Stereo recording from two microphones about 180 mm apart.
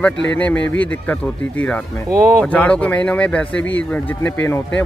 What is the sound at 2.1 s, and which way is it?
Speech, 15° right (ahead or behind).